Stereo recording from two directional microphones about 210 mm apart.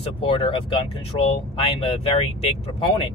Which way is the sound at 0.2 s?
25° left (ahead or behind).